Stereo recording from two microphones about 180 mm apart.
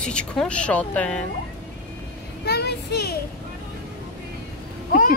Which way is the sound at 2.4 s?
65° left (ahead or behind).